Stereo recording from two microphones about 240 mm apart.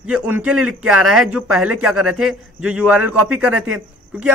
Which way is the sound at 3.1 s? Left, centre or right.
Right.